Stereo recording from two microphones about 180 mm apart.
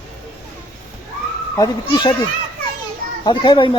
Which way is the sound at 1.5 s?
20° left (ahead or behind).